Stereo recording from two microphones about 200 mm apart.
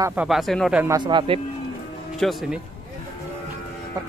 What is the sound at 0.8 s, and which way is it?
Speech, 20° right (ahead or behind).